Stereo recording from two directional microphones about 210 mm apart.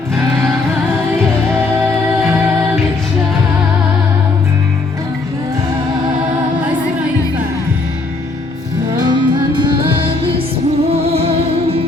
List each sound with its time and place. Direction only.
9.0 s music: 20° right (ahead or behind)